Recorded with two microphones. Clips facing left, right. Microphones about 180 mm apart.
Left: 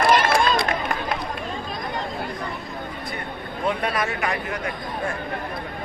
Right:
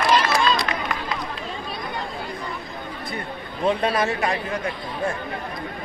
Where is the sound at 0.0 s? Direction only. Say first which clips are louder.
Left 1 dB; 55° left (ahead or behind).